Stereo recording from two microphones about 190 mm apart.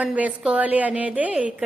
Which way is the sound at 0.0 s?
5° right (ahead or behind).